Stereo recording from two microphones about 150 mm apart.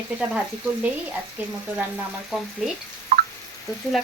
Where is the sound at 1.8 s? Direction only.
5° right (ahead or behind).